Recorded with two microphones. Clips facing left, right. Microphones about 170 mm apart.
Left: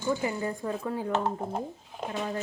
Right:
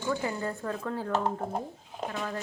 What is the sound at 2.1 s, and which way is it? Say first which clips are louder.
Speech: left 3 dB; 25° left (ahead or behind).